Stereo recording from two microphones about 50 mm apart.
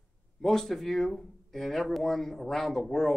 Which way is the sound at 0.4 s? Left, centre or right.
Centre.